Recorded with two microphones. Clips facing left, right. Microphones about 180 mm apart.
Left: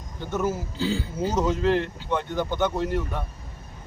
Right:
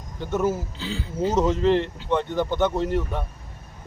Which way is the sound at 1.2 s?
25° right (ahead or behind).